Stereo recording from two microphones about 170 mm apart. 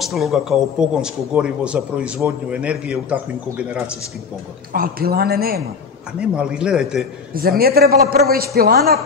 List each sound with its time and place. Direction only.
0.0 s speech: centre (ahead or behind)
4.7 s speech: 60° right (ahead or behind)
6.2 s speech: 5° right (ahead or behind)
7.3 s speech: 65° right (ahead or behind)